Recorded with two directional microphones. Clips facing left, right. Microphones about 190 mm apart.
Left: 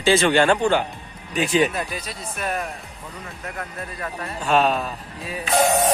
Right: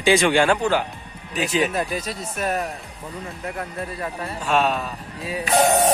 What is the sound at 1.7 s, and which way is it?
Speech, 45° right (ahead or behind).